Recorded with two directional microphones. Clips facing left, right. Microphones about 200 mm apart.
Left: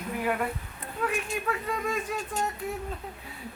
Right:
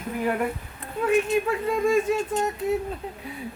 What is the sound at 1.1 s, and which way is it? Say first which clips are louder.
Speech: right 12 dB; 25° right (ahead or behind).